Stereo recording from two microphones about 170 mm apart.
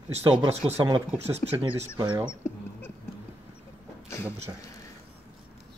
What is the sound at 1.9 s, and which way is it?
Speech, 25° right (ahead or behind).